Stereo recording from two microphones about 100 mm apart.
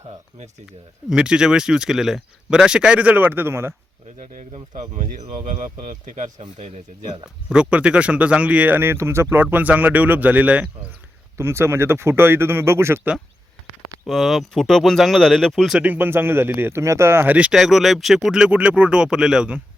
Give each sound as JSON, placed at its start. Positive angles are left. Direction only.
{"t": 1.1, "sound": "speech", "side_deg": -10}
{"t": 7.5, "sound": "speech", "side_deg": -10}
{"t": 11.3, "sound": "speech", "side_deg": -25}
{"t": 14.1, "sound": "speech", "side_deg": 0}
{"t": 15.8, "sound": "speech", "side_deg": -20}
{"t": 17.5, "sound": "speech", "side_deg": -5}